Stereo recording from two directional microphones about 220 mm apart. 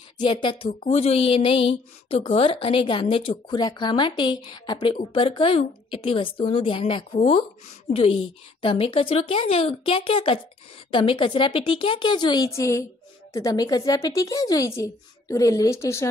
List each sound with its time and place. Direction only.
0.2 s a woman's voice: 20° left (ahead or behind)